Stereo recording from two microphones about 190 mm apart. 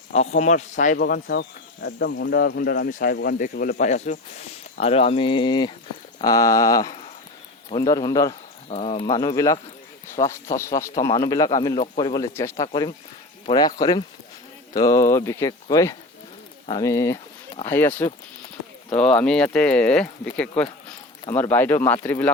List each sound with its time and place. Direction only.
0.1 s a man's voice: 35° left (ahead or behind)
0.9 s speech: 55° left (ahead or behind); by 8.4 s 20° left (ahead or behind)
8.7 s speech: 30° left (ahead or behind); by 20.1 s 5° left (ahead or behind)
21.3 s speech: 10° left (ahead or behind)